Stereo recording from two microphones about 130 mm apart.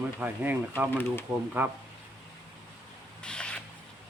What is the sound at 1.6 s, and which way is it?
Speech, 15° right (ahead or behind).